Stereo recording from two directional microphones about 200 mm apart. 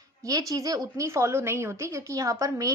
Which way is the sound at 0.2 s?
15° right (ahead or behind).